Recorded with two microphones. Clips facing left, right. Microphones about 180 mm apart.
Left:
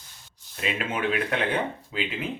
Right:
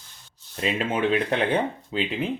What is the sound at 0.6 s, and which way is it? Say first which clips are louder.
Speech: right 4 dB; 30° right (ahead or behind).